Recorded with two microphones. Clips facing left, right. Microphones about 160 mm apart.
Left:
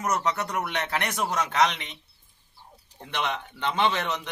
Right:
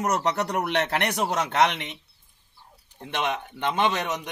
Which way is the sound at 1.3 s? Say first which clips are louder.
Right 1 dB; 25° right (ahead or behind).